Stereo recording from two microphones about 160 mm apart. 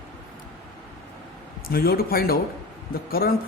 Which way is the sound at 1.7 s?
70° left (ahead or behind).